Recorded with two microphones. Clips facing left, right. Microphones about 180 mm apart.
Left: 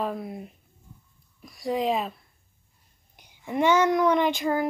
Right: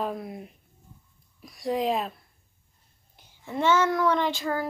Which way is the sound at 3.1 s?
15° left (ahead or behind).